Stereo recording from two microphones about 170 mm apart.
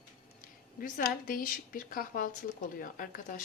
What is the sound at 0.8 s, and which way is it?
A woman's voice, 50° left (ahead or behind).